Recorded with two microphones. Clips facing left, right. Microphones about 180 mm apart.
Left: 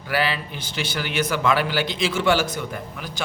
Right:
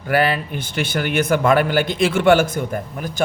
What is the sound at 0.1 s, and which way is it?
A man's voice, 50° right (ahead or behind).